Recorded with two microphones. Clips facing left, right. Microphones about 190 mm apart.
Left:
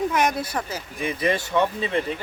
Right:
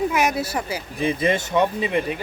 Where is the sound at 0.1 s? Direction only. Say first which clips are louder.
Right 1 dB; 5° right (ahead or behind).